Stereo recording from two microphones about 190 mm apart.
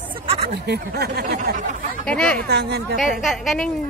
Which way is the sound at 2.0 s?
5° left (ahead or behind).